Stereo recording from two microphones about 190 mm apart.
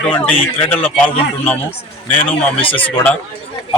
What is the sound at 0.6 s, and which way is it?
Speech, 10° left (ahead or behind).